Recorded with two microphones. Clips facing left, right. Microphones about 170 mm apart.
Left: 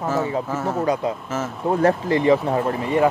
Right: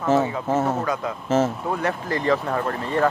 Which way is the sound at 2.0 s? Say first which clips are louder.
Left 5 dB; 20° left (ahead or behind).